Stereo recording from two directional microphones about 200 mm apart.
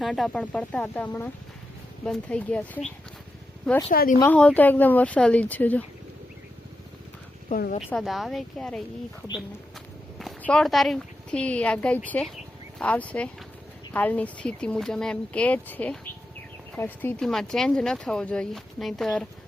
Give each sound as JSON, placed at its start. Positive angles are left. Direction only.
{"t": 0.0, "sound": "speech", "side_deg": 0}
{"t": 3.9, "sound": "speech", "side_deg": 45}
{"t": 4.2, "sound": "speech", "side_deg": 5}
{"t": 7.5, "sound": "speech", "side_deg": 40}
{"t": 7.9, "sound": "speech", "side_deg": 0}
{"t": 10.2, "sound": "speech", "side_deg": 5}